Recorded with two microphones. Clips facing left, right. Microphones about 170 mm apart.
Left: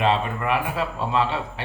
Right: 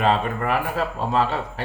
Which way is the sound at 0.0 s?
45° right (ahead or behind).